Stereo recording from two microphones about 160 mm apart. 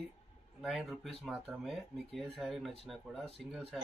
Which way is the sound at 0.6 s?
Centre (ahead or behind).